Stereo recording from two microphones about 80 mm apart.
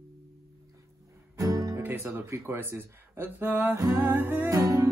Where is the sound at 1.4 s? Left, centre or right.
Right.